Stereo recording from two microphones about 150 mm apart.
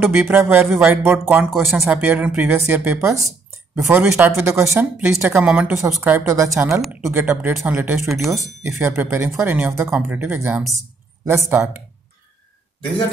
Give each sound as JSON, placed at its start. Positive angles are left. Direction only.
{"t": 0.0, "sound": "speech", "side_deg": -15}
{"t": 5.5, "sound": "speech", "side_deg": -5}
{"t": 6.0, "sound": "speech", "side_deg": -15}
{"t": 8.1, "sound": "speech", "side_deg": 0}
{"t": 8.6, "sound": "speech", "side_deg": -15}